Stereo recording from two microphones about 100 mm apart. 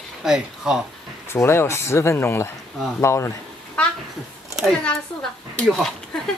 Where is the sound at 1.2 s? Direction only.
25° left (ahead or behind).